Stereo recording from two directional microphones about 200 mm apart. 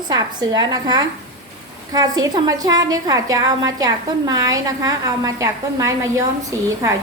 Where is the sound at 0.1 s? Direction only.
20° right (ahead or behind).